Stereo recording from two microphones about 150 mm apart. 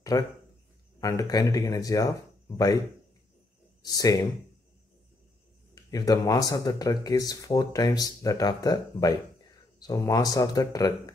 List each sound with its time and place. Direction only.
0.1 s speech: 20° left (ahead or behind)
3.8 s speech: 25° left (ahead or behind)
5.9 s speech: 25° left (ahead or behind)